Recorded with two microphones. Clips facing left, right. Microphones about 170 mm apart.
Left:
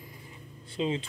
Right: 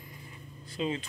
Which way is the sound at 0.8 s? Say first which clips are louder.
Left 2 dB; 25° left (ahead or behind).